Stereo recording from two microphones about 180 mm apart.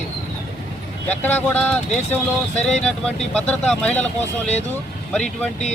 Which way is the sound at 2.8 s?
5° left (ahead or behind).